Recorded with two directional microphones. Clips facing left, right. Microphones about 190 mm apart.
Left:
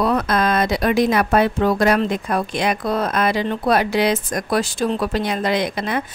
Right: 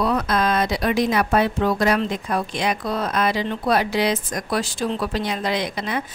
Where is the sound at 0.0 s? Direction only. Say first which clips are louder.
Left 2 dB; 55° left (ahead or behind).